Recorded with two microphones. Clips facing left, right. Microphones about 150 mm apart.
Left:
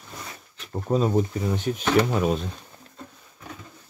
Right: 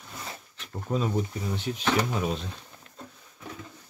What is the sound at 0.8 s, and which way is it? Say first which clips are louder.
Speech: left 6 dB; 40° left (ahead or behind).